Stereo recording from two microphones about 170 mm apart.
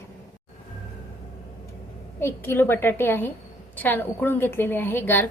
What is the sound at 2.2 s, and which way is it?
A woman's voice, 10° left (ahead or behind).